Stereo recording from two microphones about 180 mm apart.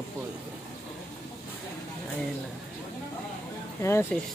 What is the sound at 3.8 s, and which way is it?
Speech, 15° left (ahead or behind).